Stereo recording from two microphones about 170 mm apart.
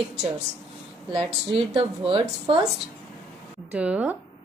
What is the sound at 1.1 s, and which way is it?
Speech, 35° right (ahead or behind).